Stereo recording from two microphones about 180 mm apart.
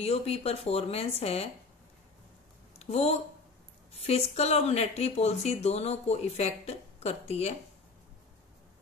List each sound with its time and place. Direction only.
0.0 s speech: 35° left (ahead or behind)
2.8 s speech: 35° left (ahead or behind)